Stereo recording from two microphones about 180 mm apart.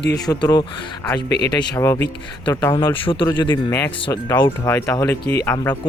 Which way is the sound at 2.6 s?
25° left (ahead or behind).